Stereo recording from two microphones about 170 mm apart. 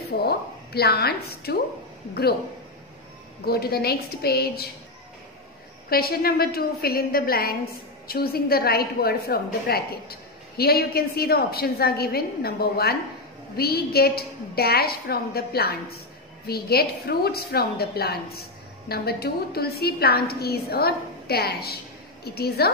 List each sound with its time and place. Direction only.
0.2 s a woman's voice: 70° left (ahead or behind)
3.4 s a woman's voice: 65° left (ahead or behind)
5.9 s a woman's voice: 65° left (ahead or behind)